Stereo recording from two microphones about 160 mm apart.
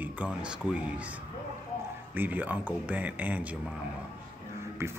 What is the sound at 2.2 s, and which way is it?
Speech, 10° right (ahead or behind).